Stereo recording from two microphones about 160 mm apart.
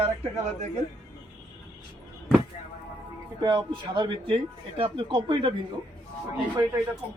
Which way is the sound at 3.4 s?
30° right (ahead or behind).